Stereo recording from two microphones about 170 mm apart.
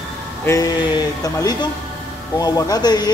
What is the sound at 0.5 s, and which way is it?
A man's voice, 20° left (ahead or behind).